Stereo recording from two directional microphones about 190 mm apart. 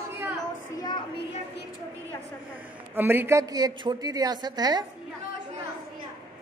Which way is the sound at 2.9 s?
10° right (ahead or behind).